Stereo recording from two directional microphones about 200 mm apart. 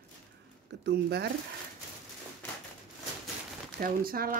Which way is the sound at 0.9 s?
55° right (ahead or behind).